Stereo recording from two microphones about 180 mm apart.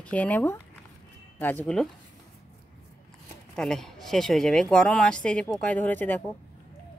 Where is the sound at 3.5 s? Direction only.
5° left (ahead or behind).